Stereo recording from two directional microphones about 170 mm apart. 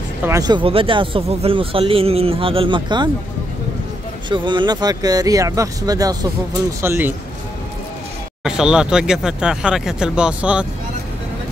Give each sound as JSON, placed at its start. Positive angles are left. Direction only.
{"t": 0.2, "sound": "speech", "side_deg": -20}
{"t": 4.3, "sound": "speech", "side_deg": -25}
{"t": 8.5, "sound": "speech", "side_deg": -5}